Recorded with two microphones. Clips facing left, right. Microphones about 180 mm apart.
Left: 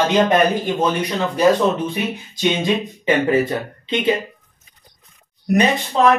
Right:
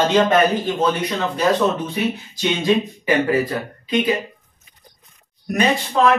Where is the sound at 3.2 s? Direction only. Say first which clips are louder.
Left 2 dB; 25° left (ahead or behind).